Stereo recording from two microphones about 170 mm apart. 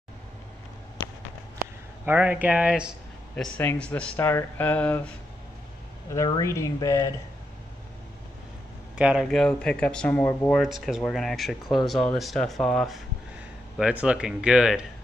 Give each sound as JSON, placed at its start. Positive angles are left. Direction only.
{"t": 2.0, "sound": "a man's voice", "side_deg": -10}
{"t": 3.5, "sound": "speech", "side_deg": 10}
{"t": 6.1, "sound": "speech", "side_deg": 25}
{"t": 8.9, "sound": "speech", "side_deg": -5}